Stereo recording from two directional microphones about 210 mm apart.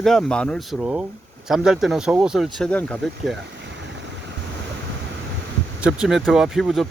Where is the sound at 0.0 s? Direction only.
5° left (ahead or behind).